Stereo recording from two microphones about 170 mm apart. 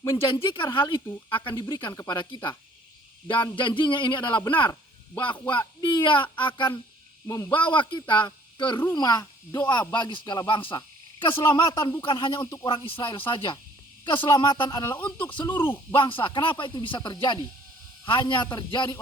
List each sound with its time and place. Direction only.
0.0 s speech: 30° left (ahead or behind); by 15.3 s 15° left (ahead or behind)
15.3 s speech: 25° left (ahead or behind)
15.5 s speech: 10° left (ahead or behind)
16.2 s speech: 30° left (ahead or behind)